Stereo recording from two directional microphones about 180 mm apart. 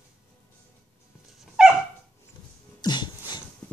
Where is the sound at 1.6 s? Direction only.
5° right (ahead or behind).